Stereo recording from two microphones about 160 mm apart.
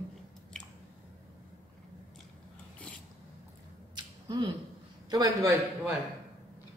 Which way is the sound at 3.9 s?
25° right (ahead or behind).